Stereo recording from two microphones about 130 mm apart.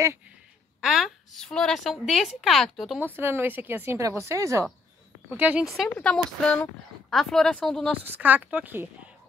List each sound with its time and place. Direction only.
0.7 s a woman's voice: 5° right (ahead or behind)
3.2 s a woman's voice: 20° right (ahead or behind)
5.4 s a woman's voice: 10° right (ahead or behind)
5.9 s a woman's voice: 10° left (ahead or behind)
8.1 s a woman's voice: 15° right (ahead or behind)